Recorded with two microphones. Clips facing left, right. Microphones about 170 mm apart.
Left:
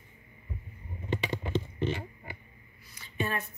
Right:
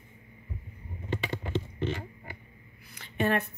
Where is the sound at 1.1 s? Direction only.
15° left (ahead or behind).